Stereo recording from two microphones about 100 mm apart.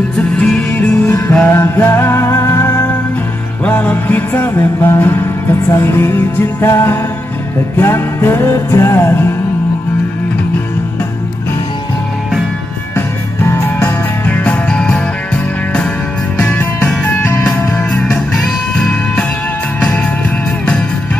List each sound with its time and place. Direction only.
0.4 s music: 10° left (ahead or behind)
1.0 s music: 35° left (ahead or behind)
1.5 s music: 20° left (ahead or behind)
12.9 s music: 25° left (ahead or behind)
16.3 s music: 15° left (ahead or behind)